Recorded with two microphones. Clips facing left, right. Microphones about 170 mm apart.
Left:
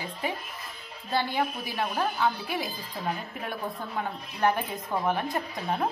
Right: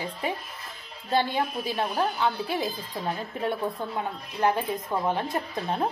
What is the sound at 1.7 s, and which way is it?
A woman's voice, 20° right (ahead or behind).